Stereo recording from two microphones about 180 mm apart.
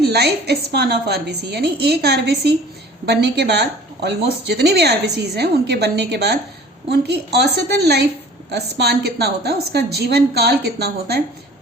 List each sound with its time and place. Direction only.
0.0 s speech: 65° right (ahead or behind)